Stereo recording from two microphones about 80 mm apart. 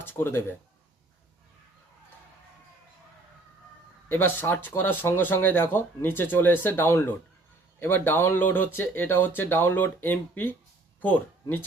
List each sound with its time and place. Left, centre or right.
0.0 s speech: left
4.1 s speech: left